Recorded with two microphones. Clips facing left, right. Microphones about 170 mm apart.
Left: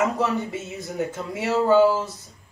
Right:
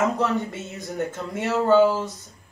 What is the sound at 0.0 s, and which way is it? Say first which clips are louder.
Speech: even; centre (ahead or behind).